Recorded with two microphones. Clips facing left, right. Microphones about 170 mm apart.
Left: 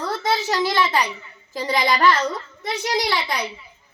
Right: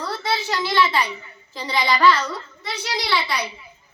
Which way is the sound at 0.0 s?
45° left (ahead or behind).